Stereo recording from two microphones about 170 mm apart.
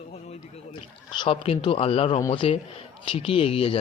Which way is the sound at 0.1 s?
40° left (ahead or behind).